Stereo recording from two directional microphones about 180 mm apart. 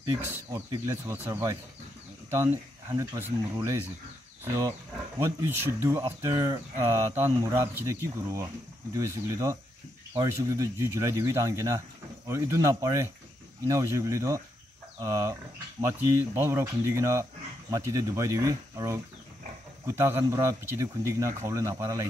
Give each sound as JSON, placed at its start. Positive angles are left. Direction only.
{"t": 0.0, "sound": "speech", "side_deg": -15}
{"t": 3.0, "sound": "speech", "side_deg": -20}